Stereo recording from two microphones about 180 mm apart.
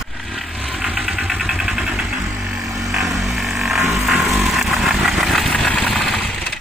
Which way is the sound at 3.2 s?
Centre (ahead or behind).